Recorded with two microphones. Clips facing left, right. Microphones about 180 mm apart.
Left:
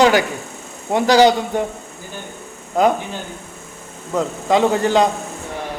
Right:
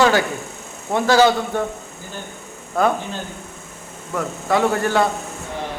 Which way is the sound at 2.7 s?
15° left (ahead or behind).